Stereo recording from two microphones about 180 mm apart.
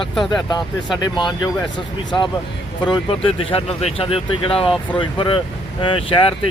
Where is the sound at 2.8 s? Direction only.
30° left (ahead or behind).